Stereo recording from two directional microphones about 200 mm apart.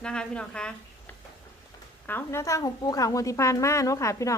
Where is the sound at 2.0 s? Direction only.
10° left (ahead or behind).